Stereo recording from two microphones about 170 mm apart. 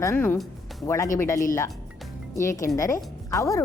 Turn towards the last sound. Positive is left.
turn(degrees=20)  # may be behind; listen again after turning